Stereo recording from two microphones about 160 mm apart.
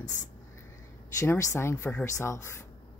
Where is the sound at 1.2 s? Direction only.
15° left (ahead or behind).